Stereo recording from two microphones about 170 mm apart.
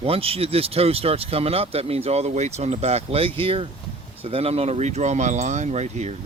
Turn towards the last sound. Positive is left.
turn(degrees=-40)  # may be behind; listen again after turning